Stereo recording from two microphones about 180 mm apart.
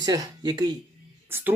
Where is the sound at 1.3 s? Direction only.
10° right (ahead or behind).